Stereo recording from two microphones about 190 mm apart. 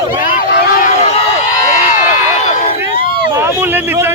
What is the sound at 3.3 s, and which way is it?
Speech, 10° right (ahead or behind).